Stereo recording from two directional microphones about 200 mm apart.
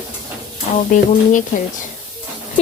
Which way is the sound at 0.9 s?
40° left (ahead or behind).